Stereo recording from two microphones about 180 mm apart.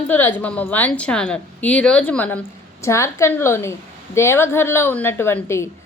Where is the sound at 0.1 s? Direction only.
10° left (ahead or behind).